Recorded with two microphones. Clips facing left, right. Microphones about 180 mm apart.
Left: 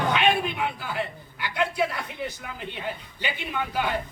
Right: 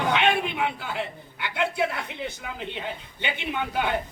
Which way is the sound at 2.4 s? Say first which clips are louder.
Right 2 dB; 20° right (ahead or behind).